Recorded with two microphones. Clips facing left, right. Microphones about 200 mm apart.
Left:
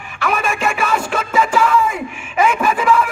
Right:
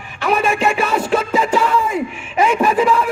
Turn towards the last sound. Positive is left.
turn(degrees=-35)  # may be behind; listen again after turning